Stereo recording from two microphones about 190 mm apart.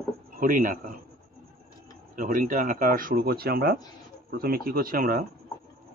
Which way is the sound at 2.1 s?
45° right (ahead or behind).